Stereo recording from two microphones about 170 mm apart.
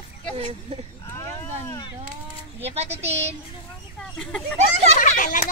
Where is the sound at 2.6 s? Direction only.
40° right (ahead or behind).